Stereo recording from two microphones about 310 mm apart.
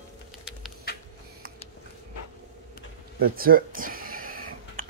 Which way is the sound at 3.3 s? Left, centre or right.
Right.